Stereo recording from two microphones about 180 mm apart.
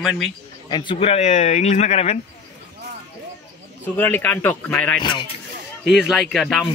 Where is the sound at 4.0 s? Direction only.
10° left (ahead or behind).